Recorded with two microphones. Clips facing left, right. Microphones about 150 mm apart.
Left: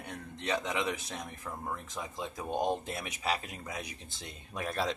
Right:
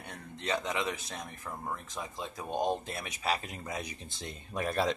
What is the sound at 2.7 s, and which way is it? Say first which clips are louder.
Speech: even; 15° left (ahead or behind).